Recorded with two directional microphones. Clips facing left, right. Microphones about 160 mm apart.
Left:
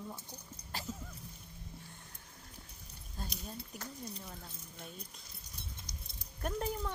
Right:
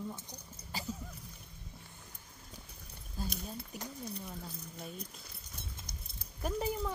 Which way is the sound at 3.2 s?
5° right (ahead or behind).